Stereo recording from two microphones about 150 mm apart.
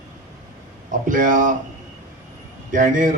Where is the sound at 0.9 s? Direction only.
60° right (ahead or behind).